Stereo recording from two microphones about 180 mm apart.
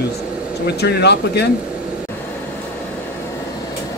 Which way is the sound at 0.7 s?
65° left (ahead or behind).